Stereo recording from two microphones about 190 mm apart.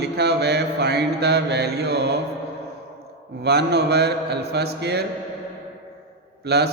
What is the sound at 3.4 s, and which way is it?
A man's voice, 60° right (ahead or behind).